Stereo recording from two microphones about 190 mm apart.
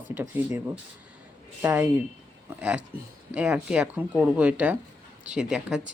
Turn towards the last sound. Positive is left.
turn(degrees=-5)  # may be behind; listen again after turning